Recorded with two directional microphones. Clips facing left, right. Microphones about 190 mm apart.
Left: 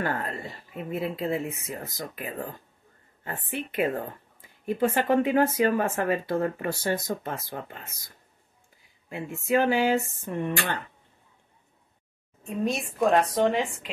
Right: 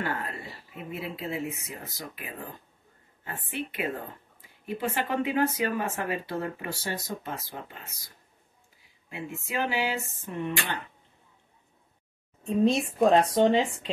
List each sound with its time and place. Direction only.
0.0 s speech: 50° left (ahead or behind)
9.1 s speech: 50° left (ahead or behind)
12.4 s a woman's voice: 25° right (ahead or behind)